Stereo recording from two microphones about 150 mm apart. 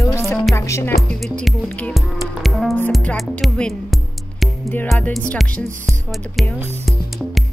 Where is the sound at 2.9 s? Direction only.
5° left (ahead or behind).